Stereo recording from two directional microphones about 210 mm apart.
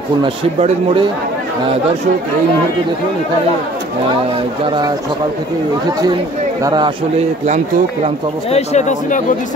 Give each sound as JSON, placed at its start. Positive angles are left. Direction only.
{"t": 0.2, "sound": "speech", "side_deg": -30}
{"t": 4.6, "sound": "speech", "side_deg": -20}
{"t": 6.6, "sound": "speech", "side_deg": -20}
{"t": 7.4, "sound": "speech", "side_deg": -35}
{"t": 8.5, "sound": "speech", "side_deg": 30}